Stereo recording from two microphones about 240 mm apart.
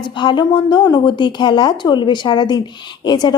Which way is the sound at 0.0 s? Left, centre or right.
Centre.